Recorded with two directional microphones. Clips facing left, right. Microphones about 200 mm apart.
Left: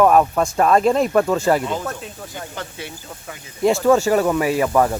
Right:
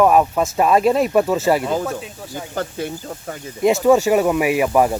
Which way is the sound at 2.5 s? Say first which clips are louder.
Right 7 dB; 45° right (ahead or behind).